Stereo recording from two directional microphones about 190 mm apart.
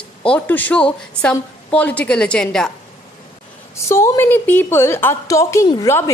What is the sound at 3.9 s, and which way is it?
A woman's voice, 15° left (ahead or behind).